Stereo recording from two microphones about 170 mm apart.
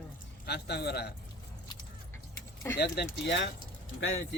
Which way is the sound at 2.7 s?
80° left.